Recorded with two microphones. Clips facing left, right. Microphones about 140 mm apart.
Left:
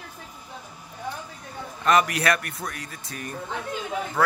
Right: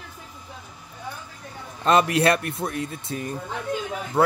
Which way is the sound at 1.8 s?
30° right (ahead or behind).